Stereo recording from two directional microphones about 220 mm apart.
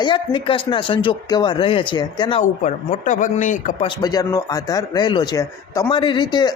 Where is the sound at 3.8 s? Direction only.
15° left (ahead or behind).